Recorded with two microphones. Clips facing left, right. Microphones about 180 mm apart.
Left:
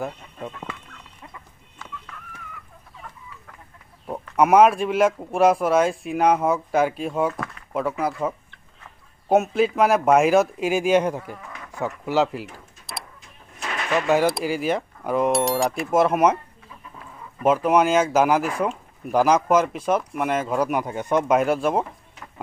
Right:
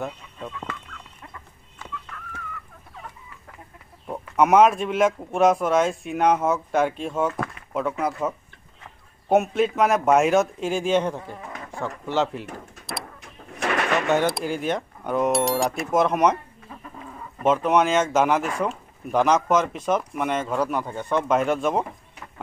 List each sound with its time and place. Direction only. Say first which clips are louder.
4.1 s speech: left 1 dB; centre (ahead or behind)
13.2 s a sound: right 7 dB; 70° right (ahead or behind)
14.0 s speech: left 2 dB; centre (ahead or behind)
17.5 s speech: left 1 dB; 5° left (ahead or behind)